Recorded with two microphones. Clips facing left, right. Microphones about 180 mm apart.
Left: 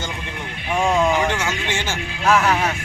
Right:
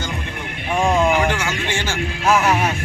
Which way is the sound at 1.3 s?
20° left (ahead or behind).